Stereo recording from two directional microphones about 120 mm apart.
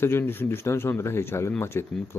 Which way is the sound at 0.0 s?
20° left (ahead or behind).